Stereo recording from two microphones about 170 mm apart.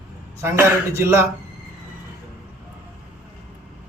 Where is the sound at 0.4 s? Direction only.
15° right (ahead or behind).